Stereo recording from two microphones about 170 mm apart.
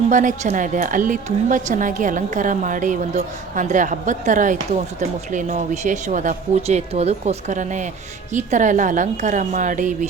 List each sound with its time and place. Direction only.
0.1 s speech: 50° right (ahead or behind)